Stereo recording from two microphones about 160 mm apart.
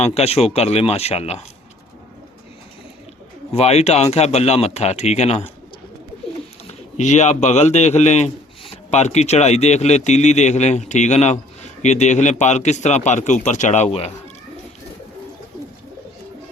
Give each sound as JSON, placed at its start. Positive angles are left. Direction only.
{"t": 0.0, "sound": "speech", "side_deg": 40}
{"t": 3.5, "sound": "speech", "side_deg": 40}
{"t": 6.7, "sound": "speech", "side_deg": 45}